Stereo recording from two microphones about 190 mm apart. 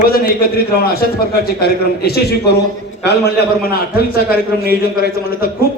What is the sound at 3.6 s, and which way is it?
A man's voice, 50° left (ahead or behind).